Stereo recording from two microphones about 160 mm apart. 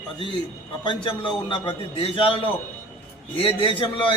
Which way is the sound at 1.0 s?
30° left (ahead or behind).